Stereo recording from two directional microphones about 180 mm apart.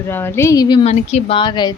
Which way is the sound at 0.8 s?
35° left (ahead or behind).